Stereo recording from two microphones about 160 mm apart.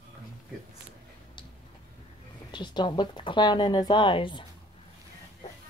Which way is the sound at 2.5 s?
30° left (ahead or behind).